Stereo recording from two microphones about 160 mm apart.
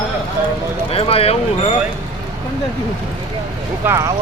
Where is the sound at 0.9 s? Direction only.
35° left (ahead or behind).